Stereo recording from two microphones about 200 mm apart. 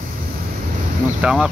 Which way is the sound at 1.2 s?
5° right (ahead or behind).